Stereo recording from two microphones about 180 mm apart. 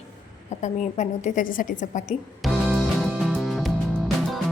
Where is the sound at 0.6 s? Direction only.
40° left (ahead or behind).